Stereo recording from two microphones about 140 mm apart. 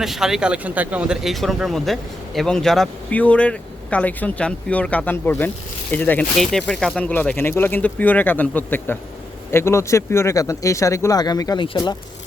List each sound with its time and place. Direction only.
0.0 s a man's voice: centre (ahead or behind); by 11.9 s 35° left (ahead or behind)